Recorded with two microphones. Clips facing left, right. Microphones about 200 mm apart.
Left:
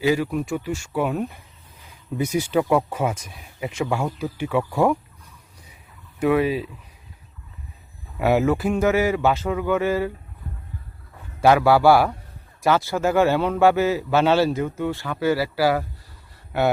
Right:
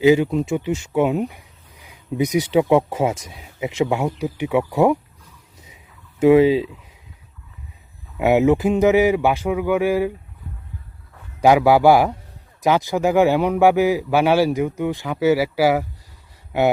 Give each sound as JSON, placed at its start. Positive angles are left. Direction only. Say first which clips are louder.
{"t": 0.0, "sound": "speech", "louder": "right 6 dB", "side_deg": -20}
{"t": 5.6, "sound": "a sound", "louder": "right 1 dB", "side_deg": -25}
{"t": 8.2, "sound": "speech", "louder": "right 4 dB", "side_deg": -20}
{"t": 11.3, "sound": "speech", "louder": "right 2 dB", "side_deg": -15}